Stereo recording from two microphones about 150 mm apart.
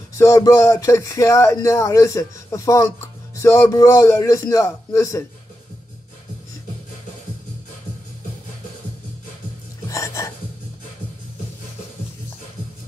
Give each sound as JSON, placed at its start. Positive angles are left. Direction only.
{"t": 0.1, "sound": "speech", "side_deg": 20}
{"t": 9.8, "sound": "music", "side_deg": 20}